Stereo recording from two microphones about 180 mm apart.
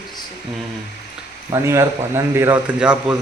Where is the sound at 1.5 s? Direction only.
15° right (ahead or behind).